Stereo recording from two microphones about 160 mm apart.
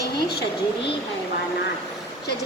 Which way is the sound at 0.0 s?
85° left.